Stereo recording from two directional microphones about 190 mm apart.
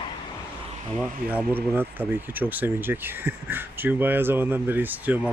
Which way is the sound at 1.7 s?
10° right (ahead or behind).